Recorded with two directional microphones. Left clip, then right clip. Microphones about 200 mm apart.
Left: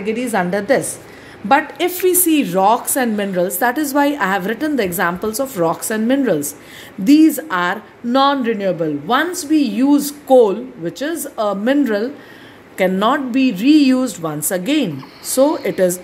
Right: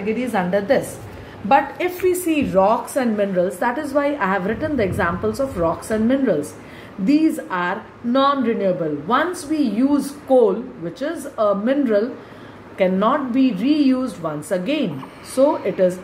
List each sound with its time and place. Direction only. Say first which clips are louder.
0.0 s a woman's voice: left 3 dB; 55° left (ahead or behind)